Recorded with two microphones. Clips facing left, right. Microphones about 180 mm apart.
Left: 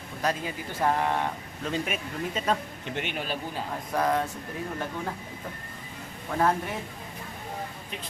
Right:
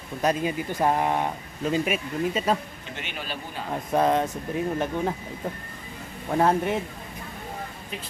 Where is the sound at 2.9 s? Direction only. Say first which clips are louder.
Left 4 dB; 55° left (ahead or behind).